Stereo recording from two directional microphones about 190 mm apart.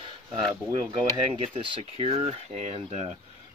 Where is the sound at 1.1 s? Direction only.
25° right (ahead or behind).